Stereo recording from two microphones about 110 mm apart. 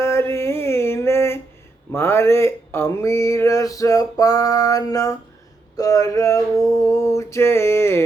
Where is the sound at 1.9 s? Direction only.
20° left (ahead or behind).